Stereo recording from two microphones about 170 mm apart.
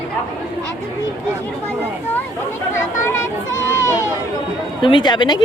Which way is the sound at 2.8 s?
15° left (ahead or behind).